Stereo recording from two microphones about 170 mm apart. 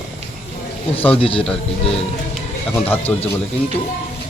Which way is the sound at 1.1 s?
35° left (ahead or behind).